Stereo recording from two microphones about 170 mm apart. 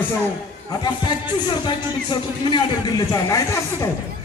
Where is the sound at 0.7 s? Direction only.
20° left (ahead or behind).